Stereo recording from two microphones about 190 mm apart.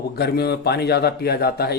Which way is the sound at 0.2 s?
60° left (ahead or behind).